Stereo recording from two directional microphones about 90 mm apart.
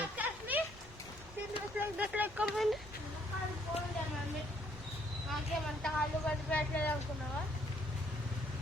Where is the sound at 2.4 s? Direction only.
Centre (ahead or behind).